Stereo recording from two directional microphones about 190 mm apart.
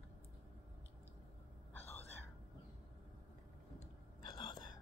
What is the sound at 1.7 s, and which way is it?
Whispering, 10° left (ahead or behind).